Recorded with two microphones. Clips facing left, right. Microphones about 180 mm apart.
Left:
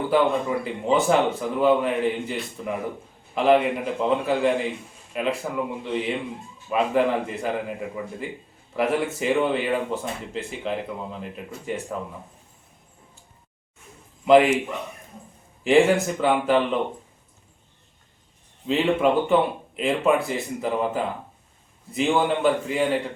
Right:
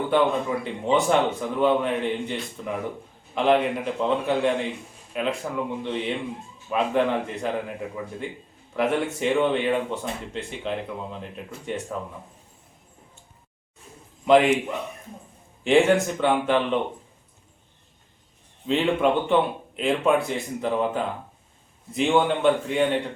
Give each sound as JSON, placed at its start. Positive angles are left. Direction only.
{"t": 0.1, "sound": "speech", "side_deg": 0}
{"t": 14.3, "sound": "speech", "side_deg": 0}
{"t": 15.6, "sound": "speech", "side_deg": 0}
{"t": 18.7, "sound": "speech", "side_deg": 0}